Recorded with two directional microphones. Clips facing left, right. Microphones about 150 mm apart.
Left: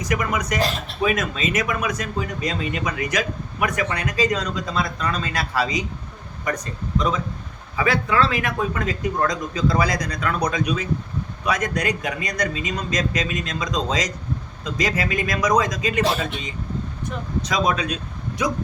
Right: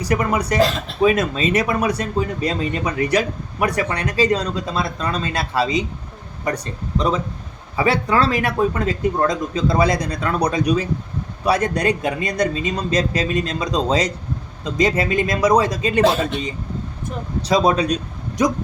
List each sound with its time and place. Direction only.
0.0 s speech: 30° right (ahead or behind)
7.8 s a man's voice: 35° right (ahead or behind)